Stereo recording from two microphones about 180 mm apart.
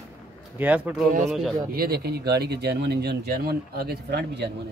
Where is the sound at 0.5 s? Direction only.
10° right (ahead or behind).